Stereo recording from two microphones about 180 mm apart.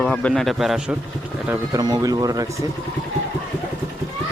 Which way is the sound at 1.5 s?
20° right (ahead or behind).